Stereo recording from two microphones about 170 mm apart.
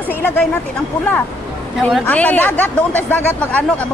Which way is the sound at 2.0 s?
10° left (ahead or behind).